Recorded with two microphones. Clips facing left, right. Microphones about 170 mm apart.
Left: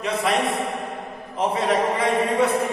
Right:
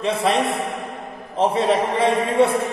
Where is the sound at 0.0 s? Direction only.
30° right (ahead or behind).